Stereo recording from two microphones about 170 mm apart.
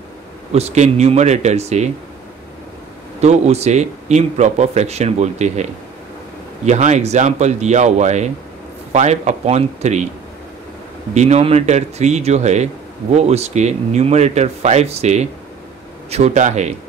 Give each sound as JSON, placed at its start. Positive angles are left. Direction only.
{"t": 0.5, "sound": "speech", "side_deg": -40}
{"t": 3.2, "sound": "speech", "side_deg": -40}
{"t": 11.1, "sound": "speech", "side_deg": -40}